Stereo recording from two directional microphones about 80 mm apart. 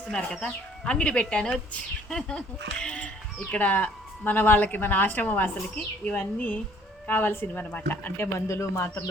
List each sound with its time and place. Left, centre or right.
0.4 s a woman's voice: centre; by 9.0 s left